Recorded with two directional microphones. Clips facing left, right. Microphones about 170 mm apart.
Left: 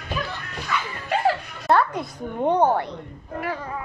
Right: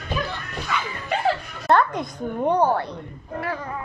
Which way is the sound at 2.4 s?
20° left (ahead or behind).